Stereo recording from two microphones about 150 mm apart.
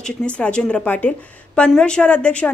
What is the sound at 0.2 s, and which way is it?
A woman's voice, 5° left (ahead or behind).